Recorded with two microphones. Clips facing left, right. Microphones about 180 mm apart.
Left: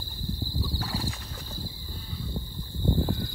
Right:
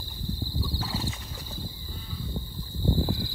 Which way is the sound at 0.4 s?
10° left (ahead or behind).